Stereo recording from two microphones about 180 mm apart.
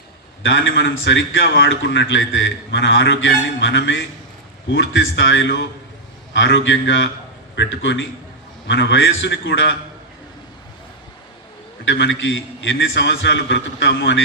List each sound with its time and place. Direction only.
0.4 s a man's voice: 90° left
11.9 s a man's voice: 90° left